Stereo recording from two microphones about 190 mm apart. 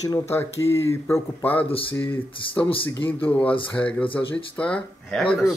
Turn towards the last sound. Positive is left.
turn(degrees=5)  # may be behind; listen again after turning